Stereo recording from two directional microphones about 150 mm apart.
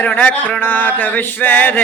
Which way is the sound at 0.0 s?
10° left (ahead or behind).